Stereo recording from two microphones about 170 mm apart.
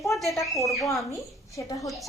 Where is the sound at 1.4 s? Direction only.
20° left (ahead or behind).